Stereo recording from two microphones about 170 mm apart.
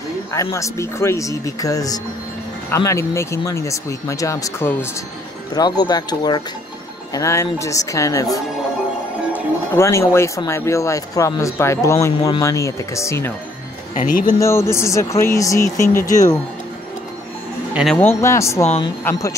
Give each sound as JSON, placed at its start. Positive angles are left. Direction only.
{"t": 0.3, "sound": "speech", "side_deg": 20}
{"t": 13.9, "sound": "speech", "side_deg": 50}
{"t": 14.4, "sound": "speech", "side_deg": 15}
{"t": 17.9, "sound": "speech", "side_deg": 15}
{"t": 18.6, "sound": "a woman's voice", "side_deg": 40}